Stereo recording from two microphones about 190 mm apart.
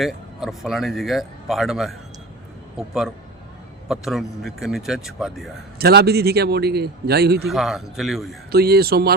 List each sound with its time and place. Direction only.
0.0 s speech: centre (ahead or behind)
5.8 s speech: 55° right (ahead or behind)
7.4 s speech: centre (ahead or behind)
8.5 s speech: 55° right (ahead or behind)